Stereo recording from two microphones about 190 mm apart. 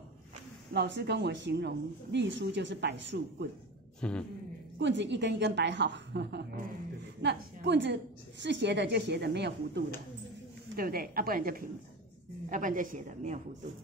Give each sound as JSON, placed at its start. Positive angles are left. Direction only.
{"t": 0.7, "sound": "a woman's voice", "side_deg": -65}
{"t": 4.0, "sound": "a man's voice", "side_deg": 5}
{"t": 4.7, "sound": "a woman's voice", "side_deg": -70}